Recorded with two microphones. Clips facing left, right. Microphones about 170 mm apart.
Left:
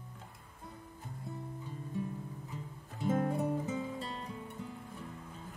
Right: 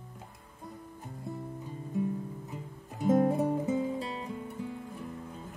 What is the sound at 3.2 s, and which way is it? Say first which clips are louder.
Guitar: right 6 dB; 35° right (ahead or behind).